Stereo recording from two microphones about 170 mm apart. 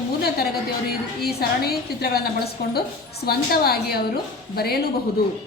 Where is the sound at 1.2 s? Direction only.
65° left (ahead or behind).